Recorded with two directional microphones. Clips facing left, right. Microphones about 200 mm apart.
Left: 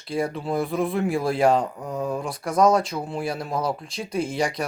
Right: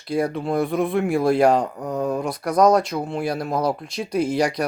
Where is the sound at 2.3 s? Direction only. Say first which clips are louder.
Right 2 dB; 30° left (ahead or behind).